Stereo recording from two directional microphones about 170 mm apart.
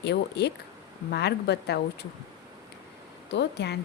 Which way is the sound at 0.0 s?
80° left.